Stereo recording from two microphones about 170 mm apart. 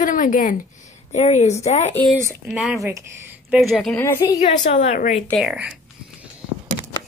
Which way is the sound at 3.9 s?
15° left (ahead or behind).